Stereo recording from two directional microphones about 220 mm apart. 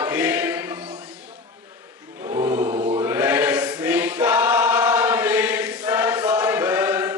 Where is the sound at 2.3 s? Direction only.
15° right (ahead or behind).